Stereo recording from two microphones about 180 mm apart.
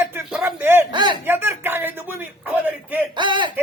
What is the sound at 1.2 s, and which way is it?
Speech, 10° right (ahead or behind).